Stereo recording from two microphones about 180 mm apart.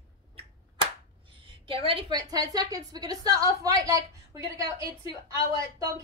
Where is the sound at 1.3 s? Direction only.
30° right (ahead or behind).